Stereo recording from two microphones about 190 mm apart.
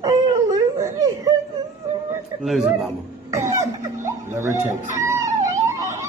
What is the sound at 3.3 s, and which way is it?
Cough, 15° right (ahead or behind).